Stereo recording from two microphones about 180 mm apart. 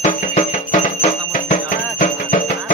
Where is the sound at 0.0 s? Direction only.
40° left (ahead or behind).